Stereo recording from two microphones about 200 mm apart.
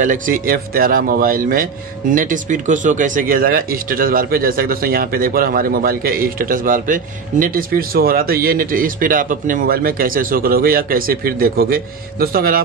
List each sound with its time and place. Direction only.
0.0 s speech: 40° right (ahead or behind)